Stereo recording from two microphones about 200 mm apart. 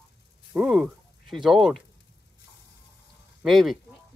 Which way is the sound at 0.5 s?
5° right (ahead or behind).